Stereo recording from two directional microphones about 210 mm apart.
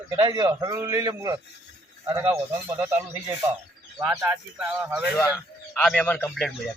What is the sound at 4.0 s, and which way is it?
A man's voice, 5° right (ahead or behind).